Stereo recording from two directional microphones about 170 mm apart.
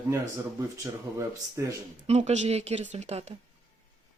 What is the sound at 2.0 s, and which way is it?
Speech, 40° right (ahead or behind).